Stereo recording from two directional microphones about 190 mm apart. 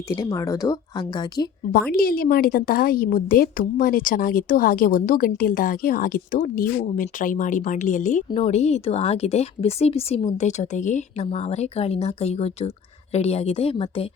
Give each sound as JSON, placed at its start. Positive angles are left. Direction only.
{"t": 0.2, "sound": "a woman's voice", "side_deg": 15}
{"t": 1.9, "sound": "a woman's voice", "side_deg": 50}